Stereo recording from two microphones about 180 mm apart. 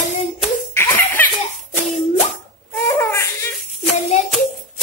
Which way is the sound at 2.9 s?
15° left (ahead or behind).